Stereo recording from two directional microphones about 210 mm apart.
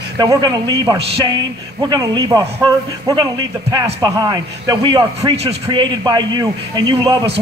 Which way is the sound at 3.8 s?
15° right (ahead or behind).